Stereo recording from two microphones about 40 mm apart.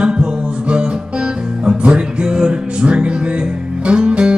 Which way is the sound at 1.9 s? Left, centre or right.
Centre.